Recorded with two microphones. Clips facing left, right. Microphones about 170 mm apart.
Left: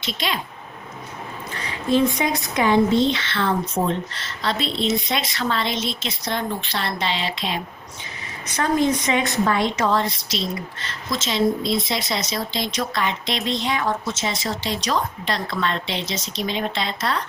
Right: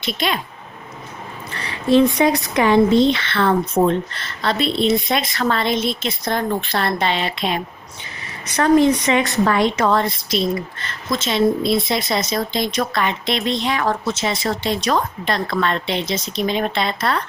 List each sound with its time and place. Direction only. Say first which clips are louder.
0.0 s a woman's voice: right 5 dB; 55° right (ahead or behind)
1.5 s a woman's voice: right 5 dB; 70° right (ahead or behind)
8.5 s a woman's voice: right 6 dB; 70° right (ahead or behind)